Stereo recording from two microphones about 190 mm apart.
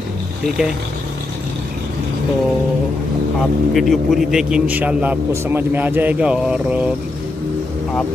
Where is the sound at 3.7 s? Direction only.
Centre (ahead or behind).